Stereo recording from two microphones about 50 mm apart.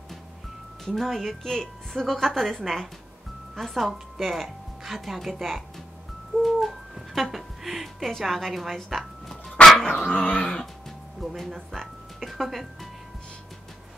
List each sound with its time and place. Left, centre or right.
0.8 s a woman's voice: centre
6.4 s a sound: centre
8.2 s speech: centre
9.8 s dog: left
11.1 s speech: centre